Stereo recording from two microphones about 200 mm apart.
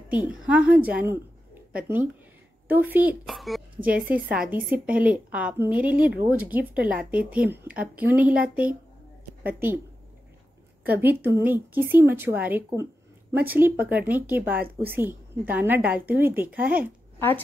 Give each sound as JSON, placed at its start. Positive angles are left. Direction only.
{"t": 0.1, "sound": "speech", "side_deg": -5}
{"t": 10.8, "sound": "speech", "side_deg": -10}